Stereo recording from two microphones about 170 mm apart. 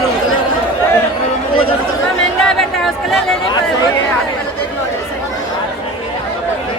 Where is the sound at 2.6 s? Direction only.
Centre (ahead or behind).